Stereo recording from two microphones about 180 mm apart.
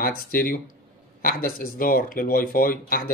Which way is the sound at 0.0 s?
55° left (ahead or behind).